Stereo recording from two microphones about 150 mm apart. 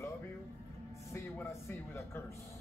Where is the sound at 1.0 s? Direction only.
15° left (ahead or behind).